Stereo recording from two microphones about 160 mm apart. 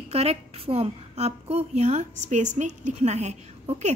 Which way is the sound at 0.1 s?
40° right (ahead or behind).